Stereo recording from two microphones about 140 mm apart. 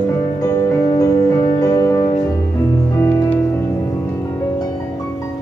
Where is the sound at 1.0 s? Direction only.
25° left (ahead or behind).